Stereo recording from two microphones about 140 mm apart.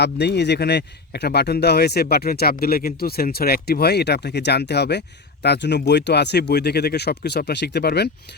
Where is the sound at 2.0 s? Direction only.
90° left.